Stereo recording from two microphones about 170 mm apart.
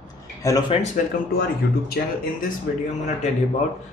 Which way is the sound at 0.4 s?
20° left (ahead or behind).